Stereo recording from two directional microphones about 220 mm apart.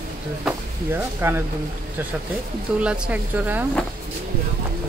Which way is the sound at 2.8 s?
5° right (ahead or behind).